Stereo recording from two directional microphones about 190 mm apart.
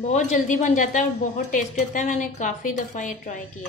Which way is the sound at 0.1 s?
40° left (ahead or behind).